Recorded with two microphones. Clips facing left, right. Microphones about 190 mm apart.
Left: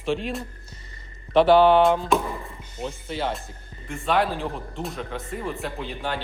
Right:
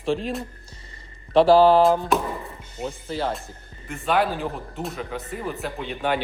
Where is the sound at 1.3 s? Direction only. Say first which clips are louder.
Right 1 dB; 30° right (ahead or behind).